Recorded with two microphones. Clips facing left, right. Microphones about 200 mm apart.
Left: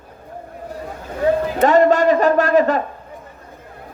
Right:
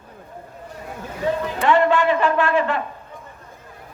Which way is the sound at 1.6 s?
40° left (ahead or behind).